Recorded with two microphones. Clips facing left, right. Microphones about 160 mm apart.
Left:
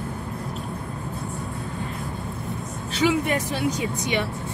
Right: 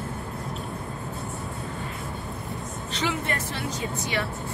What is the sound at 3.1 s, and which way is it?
Speech, 15° left (ahead or behind).